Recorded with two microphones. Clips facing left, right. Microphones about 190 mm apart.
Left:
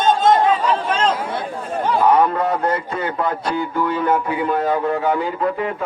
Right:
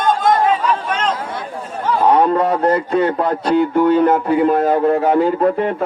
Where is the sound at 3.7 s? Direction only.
40° right (ahead or behind).